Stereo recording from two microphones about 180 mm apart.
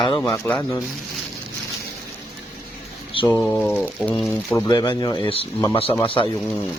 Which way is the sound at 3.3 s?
10° left (ahead or behind).